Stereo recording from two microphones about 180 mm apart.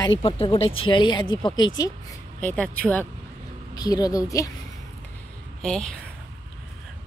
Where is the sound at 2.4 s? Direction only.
10° left (ahead or behind).